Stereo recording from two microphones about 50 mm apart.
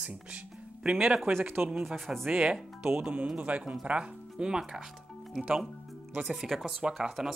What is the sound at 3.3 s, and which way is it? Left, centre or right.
Speech, right.